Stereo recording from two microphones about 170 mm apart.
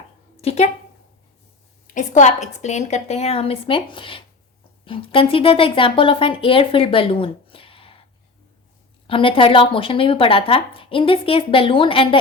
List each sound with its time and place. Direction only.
0.4 s a sound: 40° left (ahead or behind)
1.9 s speech: 45° left (ahead or behind)
9.0 s speech: 30° left (ahead or behind)